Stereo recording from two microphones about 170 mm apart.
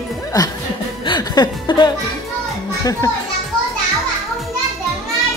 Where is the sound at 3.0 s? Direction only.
25° left (ahead or behind).